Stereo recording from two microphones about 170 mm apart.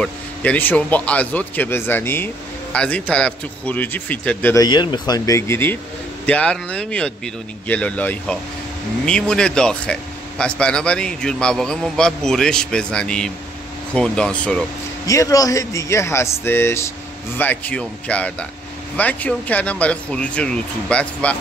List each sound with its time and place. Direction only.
0.0 s speech: 10° left (ahead or behind)
4.6 s speech: 25° left (ahead or behind); by 14.6 s 5° left (ahead or behind)
15.0 s speech: 20° left (ahead or behind)